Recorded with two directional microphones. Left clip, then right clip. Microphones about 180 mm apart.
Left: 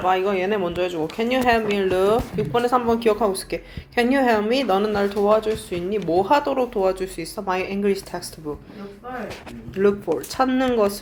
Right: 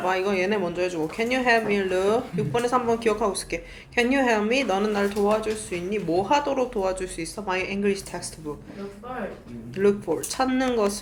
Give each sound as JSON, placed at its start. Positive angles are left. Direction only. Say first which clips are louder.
{"t": 0.3, "sound": "speech", "louder": "left 2 dB", "side_deg": 15}
{"t": 9.7, "sound": "speech", "louder": "left 2 dB", "side_deg": 25}